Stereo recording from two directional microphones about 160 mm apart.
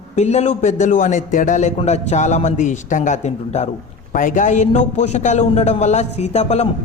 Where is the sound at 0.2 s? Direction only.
45° left (ahead or behind).